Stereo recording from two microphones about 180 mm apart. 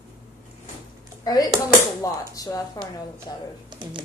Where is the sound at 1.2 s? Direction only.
20° left (ahead or behind).